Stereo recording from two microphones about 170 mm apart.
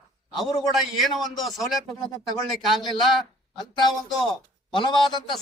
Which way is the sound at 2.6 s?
Centre (ahead or behind).